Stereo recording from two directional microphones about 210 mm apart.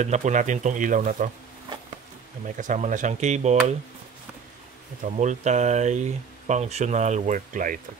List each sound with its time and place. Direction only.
0.0 s speech: 35° right (ahead or behind)
2.4 s speech: 35° right (ahead or behind)
5.0 s speech: 35° right (ahead or behind)